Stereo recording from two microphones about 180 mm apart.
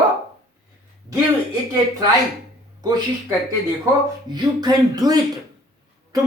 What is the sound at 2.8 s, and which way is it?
A woman's voice, 20° right (ahead or behind).